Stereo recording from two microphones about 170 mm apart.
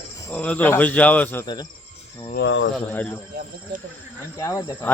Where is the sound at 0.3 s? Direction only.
5° left (ahead or behind).